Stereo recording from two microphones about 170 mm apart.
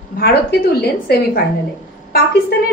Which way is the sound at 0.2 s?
70° left (ahead or behind).